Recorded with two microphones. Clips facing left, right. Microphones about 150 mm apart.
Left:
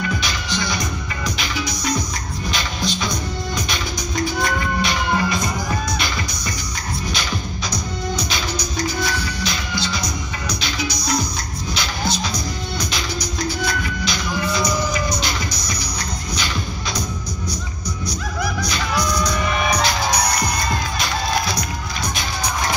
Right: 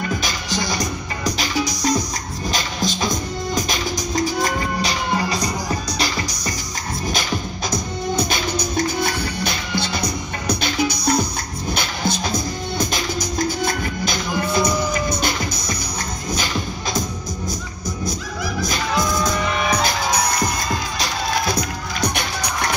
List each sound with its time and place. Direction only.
0.2 s music: 40° right (ahead or behind)
7.7 s music: 50° right (ahead or behind)
18.9 s music: 25° right (ahead or behind)